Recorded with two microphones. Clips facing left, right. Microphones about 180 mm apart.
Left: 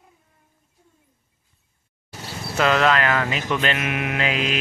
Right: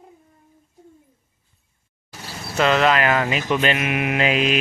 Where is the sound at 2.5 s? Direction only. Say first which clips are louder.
Right 1 dB; centre (ahead or behind).